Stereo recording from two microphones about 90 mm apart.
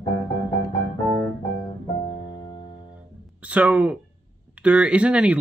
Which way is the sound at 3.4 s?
15° right (ahead or behind).